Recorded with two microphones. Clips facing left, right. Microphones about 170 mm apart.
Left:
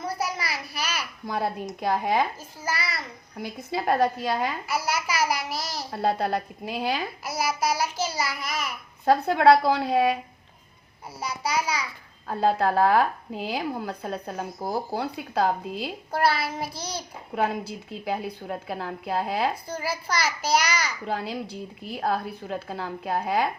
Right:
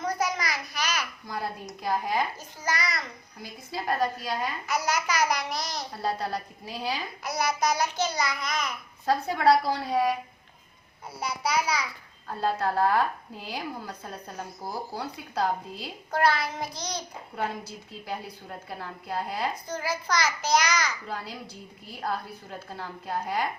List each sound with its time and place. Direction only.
0.0 s a sound: 10° left (ahead or behind)
1.3 s speech: 60° left (ahead or behind)
3.3 s speech: 65° left (ahead or behind)
4.6 s a child's voice: 10° left (ahead or behind)
5.9 s speech: 60° left (ahead or behind)
7.3 s a child's voice: 5° left (ahead or behind)
9.0 s speech: 65° left (ahead or behind)
12.3 s speech: 65° left (ahead or behind)
16.1 s a child's voice: 10° left (ahead or behind)
17.3 s a woman's voice: 70° left (ahead or behind)
19.6 s a child's voice: 10° left (ahead or behind)
21.1 s a woman's voice: 60° left (ahead or behind)